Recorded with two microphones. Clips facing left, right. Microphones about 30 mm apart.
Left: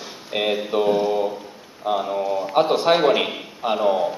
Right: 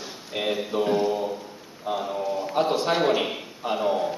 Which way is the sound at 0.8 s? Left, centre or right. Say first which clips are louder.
Left 4 dB; centre.